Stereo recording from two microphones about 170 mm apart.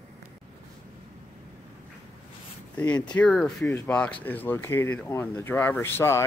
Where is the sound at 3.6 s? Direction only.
15° left (ahead or behind).